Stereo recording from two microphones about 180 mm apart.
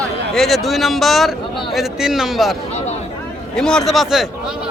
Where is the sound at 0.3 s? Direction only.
Centre (ahead or behind).